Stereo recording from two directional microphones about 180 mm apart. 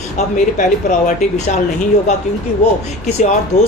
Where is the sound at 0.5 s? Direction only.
45° left (ahead or behind).